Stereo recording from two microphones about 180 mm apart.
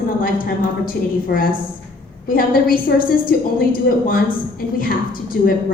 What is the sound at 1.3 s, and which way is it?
A woman's voice, 55° left (ahead or behind).